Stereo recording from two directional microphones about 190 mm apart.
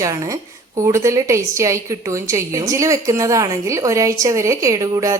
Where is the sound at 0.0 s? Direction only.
15° right (ahead or behind).